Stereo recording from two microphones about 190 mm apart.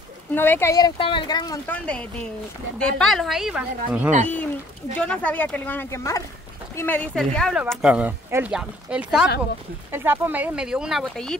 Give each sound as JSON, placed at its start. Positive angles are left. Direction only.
{"t": 0.3, "sound": "speech", "side_deg": 10}
{"t": 1.7, "sound": "speech", "side_deg": 5}
{"t": 4.9, "sound": "speech", "side_deg": 5}